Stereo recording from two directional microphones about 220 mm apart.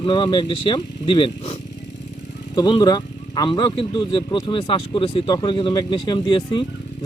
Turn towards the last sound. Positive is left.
turn(degrees=20)  # may be behind; listen again after turning